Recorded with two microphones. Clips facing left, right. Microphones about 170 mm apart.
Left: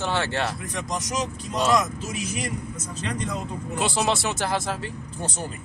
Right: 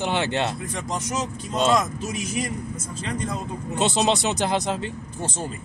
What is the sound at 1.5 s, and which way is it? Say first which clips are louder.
Speech: right 1 dB; 25° right (ahead or behind).